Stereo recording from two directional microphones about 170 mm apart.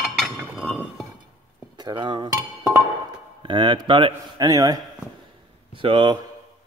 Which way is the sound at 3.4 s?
30° right (ahead or behind).